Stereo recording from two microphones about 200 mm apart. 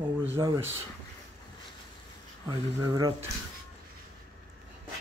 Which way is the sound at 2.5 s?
20° right (ahead or behind).